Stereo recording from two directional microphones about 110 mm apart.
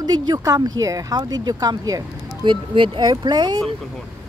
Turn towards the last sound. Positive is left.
turn(degrees=-40)  # may be behind; listen again after turning